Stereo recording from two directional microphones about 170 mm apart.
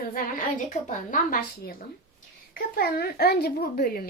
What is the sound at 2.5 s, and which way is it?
A woman's voice, 60° left (ahead or behind).